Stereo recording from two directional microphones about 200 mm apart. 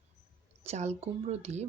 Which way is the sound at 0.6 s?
35° right (ahead or behind).